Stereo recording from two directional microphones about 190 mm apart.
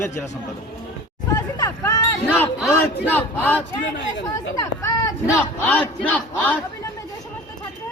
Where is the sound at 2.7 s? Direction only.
10° left (ahead or behind).